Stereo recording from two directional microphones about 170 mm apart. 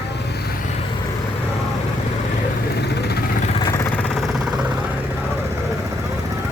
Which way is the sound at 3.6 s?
20° left (ahead or behind).